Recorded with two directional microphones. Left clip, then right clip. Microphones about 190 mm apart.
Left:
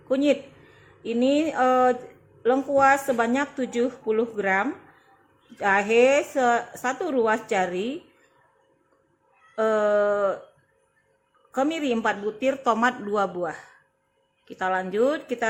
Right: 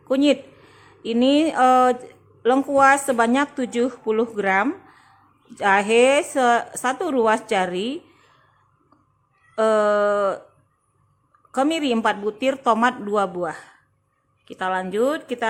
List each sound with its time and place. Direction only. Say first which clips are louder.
0.1 s speech: right 3 dB; 15° right (ahead or behind)
9.6 s speech: right 3 dB; 15° right (ahead or behind)
11.5 s speech: right 4 dB; 15° right (ahead or behind)